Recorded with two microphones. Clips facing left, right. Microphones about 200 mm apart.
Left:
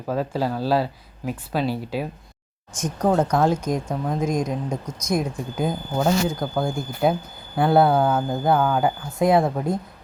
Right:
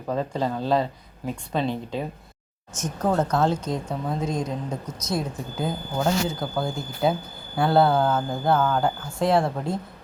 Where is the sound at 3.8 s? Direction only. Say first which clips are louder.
Left 3 dB; centre (ahead or behind).